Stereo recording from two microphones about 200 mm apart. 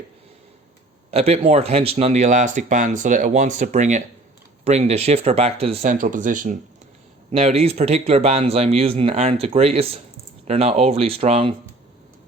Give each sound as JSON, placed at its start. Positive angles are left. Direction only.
{"t": 1.1, "sound": "speech", "side_deg": -30}
{"t": 7.3, "sound": "speech", "side_deg": -30}